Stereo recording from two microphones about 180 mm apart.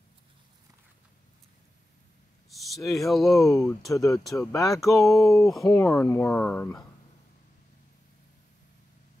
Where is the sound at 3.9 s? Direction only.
15° left (ahead or behind).